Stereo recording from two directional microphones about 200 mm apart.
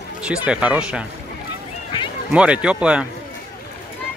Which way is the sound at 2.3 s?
5° right (ahead or behind).